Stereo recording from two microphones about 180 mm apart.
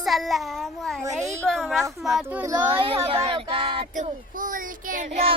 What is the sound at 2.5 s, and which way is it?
Speech, 25° right (ahead or behind).